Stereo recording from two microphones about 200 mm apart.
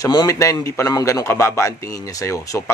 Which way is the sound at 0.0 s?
20° left (ahead or behind).